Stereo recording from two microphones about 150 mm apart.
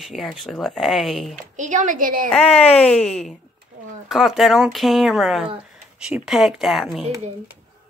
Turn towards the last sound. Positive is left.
turn(degrees=0)  # may be behind; listen again after turning